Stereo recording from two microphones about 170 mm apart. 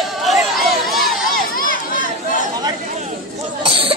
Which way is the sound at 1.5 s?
55° left (ahead or behind).